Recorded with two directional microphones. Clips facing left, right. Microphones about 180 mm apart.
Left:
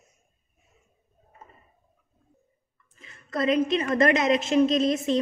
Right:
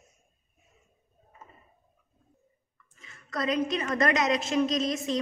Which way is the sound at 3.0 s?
25° left (ahead or behind).